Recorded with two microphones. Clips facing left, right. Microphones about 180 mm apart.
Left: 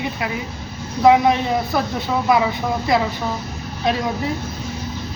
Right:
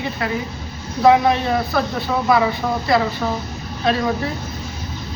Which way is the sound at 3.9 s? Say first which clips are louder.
Right 1 dB; 15° left (ahead or behind).